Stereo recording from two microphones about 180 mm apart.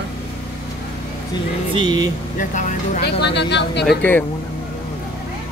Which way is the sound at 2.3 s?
45° left (ahead or behind).